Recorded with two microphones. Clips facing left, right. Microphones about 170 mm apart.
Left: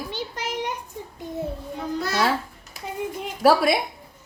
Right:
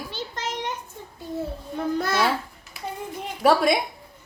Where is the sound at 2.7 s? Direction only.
40° left (ahead or behind).